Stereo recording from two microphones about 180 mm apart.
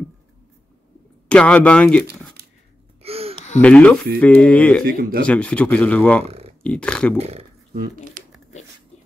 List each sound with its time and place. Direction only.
1.3 s speech: 5° left (ahead or behind)
3.0 s a sound: 35° right (ahead or behind)
3.6 s speech: 5° left (ahead or behind)
4.8 s speech: 50° right (ahead or behind)
5.2 s speech: 5° left (ahead or behind)
6.2 s a sound: 35° right (ahead or behind)
6.6 s speech: 5° left (ahead or behind)
7.2 s speech: 35° right (ahead or behind)
7.7 s speech: 50° right (ahead or behind)